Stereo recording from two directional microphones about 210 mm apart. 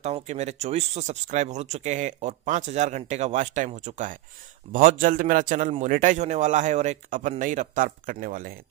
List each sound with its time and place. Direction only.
0.0 s speech: 30° right (ahead or behind)